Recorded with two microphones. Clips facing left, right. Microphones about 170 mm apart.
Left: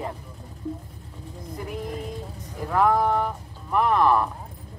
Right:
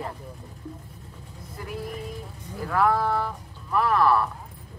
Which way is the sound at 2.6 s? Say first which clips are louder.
Left 2 dB; 20° left (ahead or behind).